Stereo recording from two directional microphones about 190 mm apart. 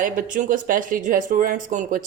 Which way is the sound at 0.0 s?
45° right (ahead or behind).